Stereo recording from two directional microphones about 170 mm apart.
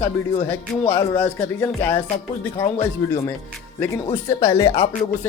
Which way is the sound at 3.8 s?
15° left (ahead or behind).